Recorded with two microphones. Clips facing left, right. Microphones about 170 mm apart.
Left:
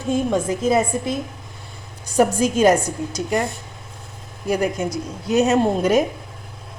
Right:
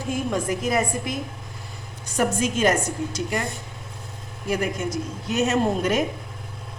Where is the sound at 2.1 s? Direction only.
35° left (ahead or behind).